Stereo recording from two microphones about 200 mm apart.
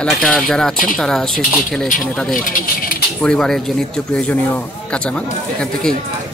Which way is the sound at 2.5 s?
45° left (ahead or behind).